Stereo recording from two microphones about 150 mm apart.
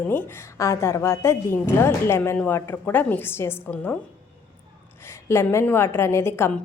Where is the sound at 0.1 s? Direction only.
15° left (ahead or behind).